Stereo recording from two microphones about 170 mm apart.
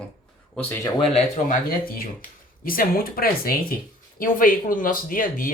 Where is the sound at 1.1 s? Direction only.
50° left (ahead or behind).